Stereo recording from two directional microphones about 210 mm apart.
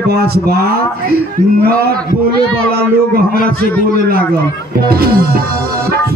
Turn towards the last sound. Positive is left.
turn(degrees=-45)  # may be behind; listen again after turning